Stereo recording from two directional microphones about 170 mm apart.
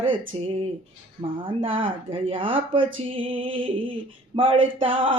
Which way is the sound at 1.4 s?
30° right (ahead or behind).